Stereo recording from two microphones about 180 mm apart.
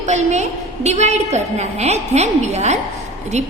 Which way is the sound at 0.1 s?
40° right (ahead or behind).